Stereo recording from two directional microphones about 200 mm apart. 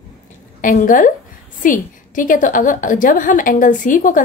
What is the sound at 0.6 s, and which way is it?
A woman's voice, 40° left (ahead or behind).